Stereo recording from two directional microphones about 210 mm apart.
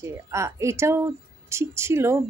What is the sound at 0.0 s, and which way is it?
Speech, 15° right (ahead or behind).